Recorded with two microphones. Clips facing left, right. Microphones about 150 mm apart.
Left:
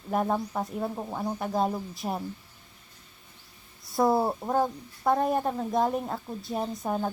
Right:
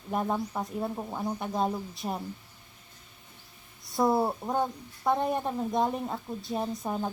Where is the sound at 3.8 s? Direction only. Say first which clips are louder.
Left 2 dB; centre (ahead or behind).